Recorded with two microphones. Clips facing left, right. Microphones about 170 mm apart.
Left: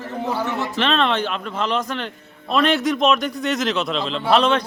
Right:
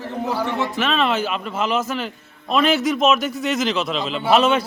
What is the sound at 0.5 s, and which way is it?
A man's voice, 10° right (ahead or behind).